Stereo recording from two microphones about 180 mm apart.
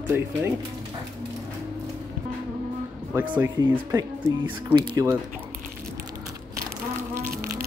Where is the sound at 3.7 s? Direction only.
15° right (ahead or behind).